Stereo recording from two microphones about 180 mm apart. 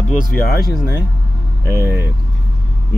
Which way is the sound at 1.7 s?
15° right (ahead or behind).